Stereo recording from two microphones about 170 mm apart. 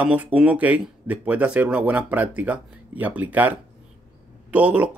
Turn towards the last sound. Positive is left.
turn(degrees=-10)  # may be behind; listen again after turning